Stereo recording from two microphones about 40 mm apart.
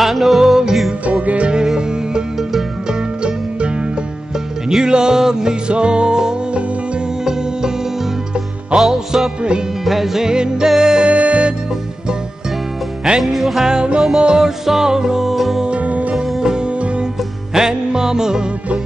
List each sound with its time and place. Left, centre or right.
0.0 s music: centre
1.2 s music: right
2.9 s music: right
8.7 s music: centre
10.3 s music: centre
11.1 s music: right
13.2 s music: centre
13.7 s music: right
15.8 s music: right
16.3 s music: centre